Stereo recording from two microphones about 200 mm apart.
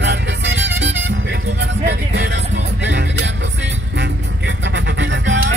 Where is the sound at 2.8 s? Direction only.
65° right (ahead or behind).